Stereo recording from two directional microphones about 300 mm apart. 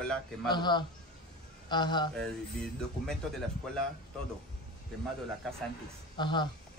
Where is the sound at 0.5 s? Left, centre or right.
Centre.